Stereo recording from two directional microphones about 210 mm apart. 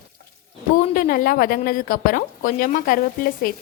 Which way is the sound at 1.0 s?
40° left (ahead or behind).